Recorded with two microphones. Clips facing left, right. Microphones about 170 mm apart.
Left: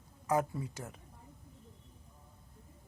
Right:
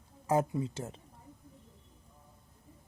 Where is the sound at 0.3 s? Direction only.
25° right (ahead or behind).